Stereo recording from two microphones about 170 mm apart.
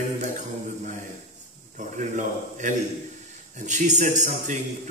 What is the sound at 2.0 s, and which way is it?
A man's voice, 45° right (ahead or behind).